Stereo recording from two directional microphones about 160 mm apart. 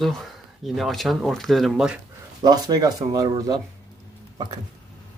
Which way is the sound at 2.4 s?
25° right (ahead or behind).